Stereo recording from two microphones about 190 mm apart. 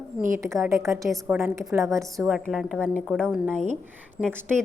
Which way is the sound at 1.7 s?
15° right (ahead or behind).